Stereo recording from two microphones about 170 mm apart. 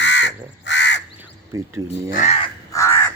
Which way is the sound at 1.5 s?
15° right (ahead or behind).